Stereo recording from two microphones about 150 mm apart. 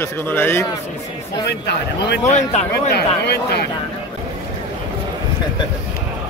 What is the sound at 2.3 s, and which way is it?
Speech, 45° left (ahead or behind).